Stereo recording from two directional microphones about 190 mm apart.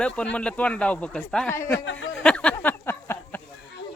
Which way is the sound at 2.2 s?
5° left (ahead or behind).